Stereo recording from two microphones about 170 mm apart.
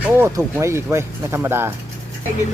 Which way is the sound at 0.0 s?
15° right (ahead or behind).